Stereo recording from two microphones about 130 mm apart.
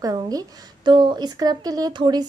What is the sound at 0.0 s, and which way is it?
A woman's voice, 30° right (ahead or behind).